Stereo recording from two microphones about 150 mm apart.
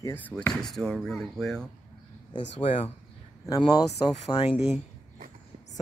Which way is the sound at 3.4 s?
25° left (ahead or behind).